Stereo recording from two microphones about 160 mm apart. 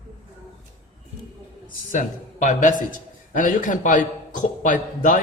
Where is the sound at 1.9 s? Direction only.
50° left (ahead or behind).